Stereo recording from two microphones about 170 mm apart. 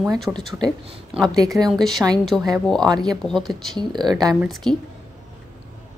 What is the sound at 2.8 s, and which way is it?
Speech, 25° right (ahead or behind).